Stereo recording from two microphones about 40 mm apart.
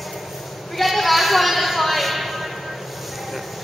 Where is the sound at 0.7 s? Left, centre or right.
Centre.